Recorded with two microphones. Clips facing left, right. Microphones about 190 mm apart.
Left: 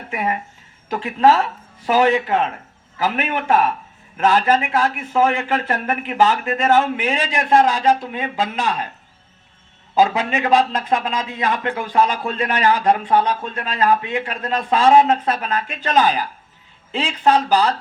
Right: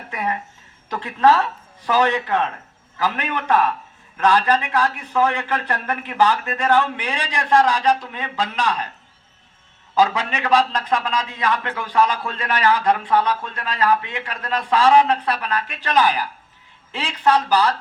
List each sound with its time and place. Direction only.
0.1 s a man's voice: 20° left (ahead or behind)
9.9 s a man's voice: 20° left (ahead or behind)